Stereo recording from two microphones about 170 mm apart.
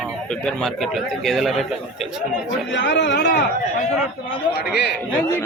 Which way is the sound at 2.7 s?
90° left.